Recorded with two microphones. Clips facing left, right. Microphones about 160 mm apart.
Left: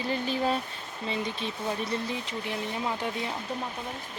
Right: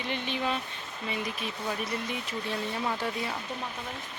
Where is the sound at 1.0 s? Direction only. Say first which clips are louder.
Left 2 dB; 30° left (ahead or behind).